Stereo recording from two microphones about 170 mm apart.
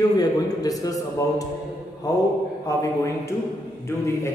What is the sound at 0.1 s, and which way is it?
A man's voice, 20° left (ahead or behind).